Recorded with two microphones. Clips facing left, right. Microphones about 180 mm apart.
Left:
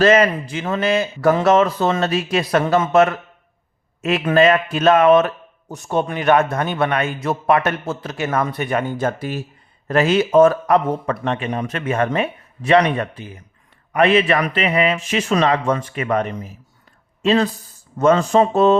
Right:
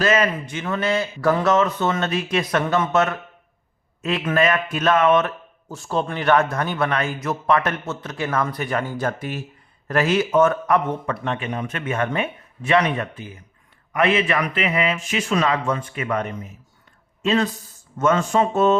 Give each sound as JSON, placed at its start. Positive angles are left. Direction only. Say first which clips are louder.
{"t": 0.0, "sound": "speech", "louder": "left 6 dB", "side_deg": 35}
{"t": 14.2, "sound": "speech", "louder": "left 4 dB", "side_deg": 40}
{"t": 17.2, "sound": "speech", "louder": "left 4 dB", "side_deg": 35}